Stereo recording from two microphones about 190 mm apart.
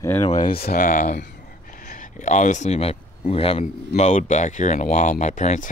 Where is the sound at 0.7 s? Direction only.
45° left (ahead or behind).